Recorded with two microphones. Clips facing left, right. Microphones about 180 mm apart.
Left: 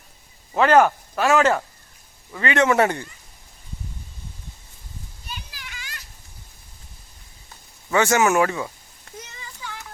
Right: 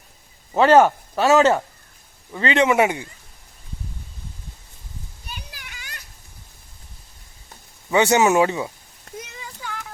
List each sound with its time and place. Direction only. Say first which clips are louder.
0.5 s speech: right 2 dB; 30° right (ahead or behind); by 3.1 s 10° right (ahead or behind)
7.9 s speech: right 2 dB; 20° right (ahead or behind)
9.1 s a sound: right 4 dB; 50° right (ahead or behind)